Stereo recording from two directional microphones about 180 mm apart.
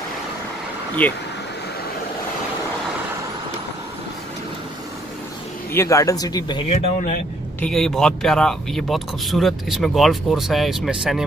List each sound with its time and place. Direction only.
1.0 s speech: 10° left (ahead or behind)
5.7 s speech: 15° left (ahead or behind)
6.7 s speech: 45° left (ahead or behind)
7.6 s speech: 5° left (ahead or behind)